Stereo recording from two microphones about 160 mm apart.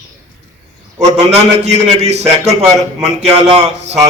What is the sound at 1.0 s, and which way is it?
A man's voice, 45° right (ahead or behind).